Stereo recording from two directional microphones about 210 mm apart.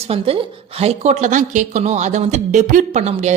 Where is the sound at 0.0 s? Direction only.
30° right (ahead or behind).